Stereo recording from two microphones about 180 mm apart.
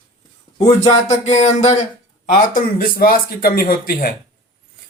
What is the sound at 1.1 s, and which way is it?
A man's voice, 40° left (ahead or behind).